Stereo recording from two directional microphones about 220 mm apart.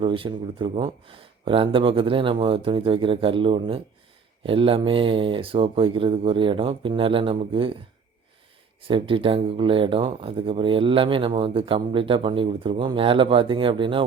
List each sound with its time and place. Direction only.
0.0 s speech: 25° right (ahead or behind)
8.8 s speech: 25° right (ahead or behind)